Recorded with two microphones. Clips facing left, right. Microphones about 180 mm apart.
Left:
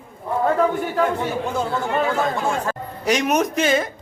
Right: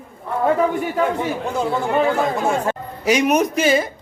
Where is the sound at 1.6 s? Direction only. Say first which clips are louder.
Right 5 dB; 10° right (ahead or behind).